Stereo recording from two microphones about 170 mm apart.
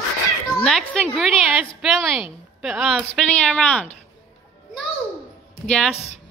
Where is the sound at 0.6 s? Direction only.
5° left (ahead or behind).